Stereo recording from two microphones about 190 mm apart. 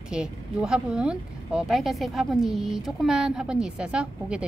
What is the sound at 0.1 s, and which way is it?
Speech, 5° right (ahead or behind).